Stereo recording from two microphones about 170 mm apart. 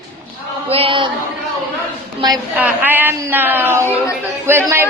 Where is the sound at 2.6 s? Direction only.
10° right (ahead or behind).